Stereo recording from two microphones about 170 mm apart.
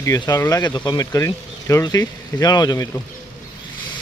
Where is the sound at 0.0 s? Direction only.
20° left (ahead or behind).